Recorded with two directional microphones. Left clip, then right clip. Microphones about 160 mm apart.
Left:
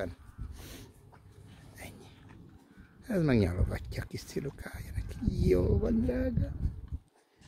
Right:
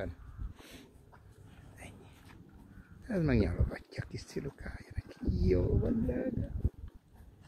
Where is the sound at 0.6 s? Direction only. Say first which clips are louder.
Left 3 dB; 30° left (ahead or behind).